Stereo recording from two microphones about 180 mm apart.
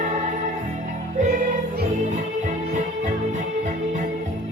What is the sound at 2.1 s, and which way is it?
Music, 40° right (ahead or behind).